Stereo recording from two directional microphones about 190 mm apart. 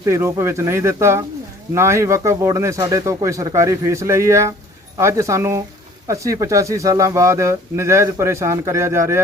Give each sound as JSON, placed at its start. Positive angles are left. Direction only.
{"t": 0.0, "sound": "speech", "side_deg": -15}